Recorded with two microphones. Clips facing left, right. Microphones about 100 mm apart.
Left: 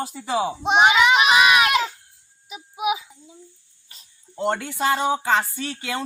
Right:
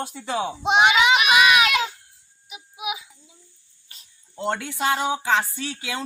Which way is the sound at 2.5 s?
40° left (ahead or behind).